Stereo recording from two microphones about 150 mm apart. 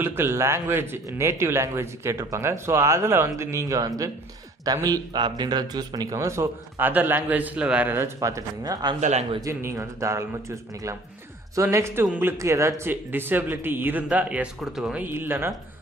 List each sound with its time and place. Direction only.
0.0 s speech: 15° right (ahead or behind)